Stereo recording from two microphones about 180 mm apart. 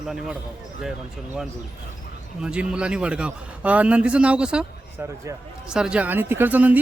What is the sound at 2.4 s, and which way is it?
Speech, 5° right (ahead or behind).